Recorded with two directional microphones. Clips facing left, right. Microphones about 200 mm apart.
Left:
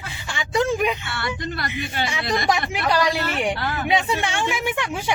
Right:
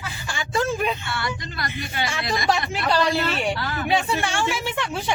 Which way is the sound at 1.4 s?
50° left (ahead or behind).